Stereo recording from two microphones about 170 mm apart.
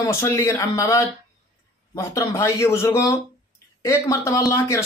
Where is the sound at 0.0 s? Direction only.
15° left (ahead or behind).